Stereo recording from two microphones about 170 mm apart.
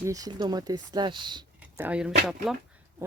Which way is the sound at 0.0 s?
20° right (ahead or behind).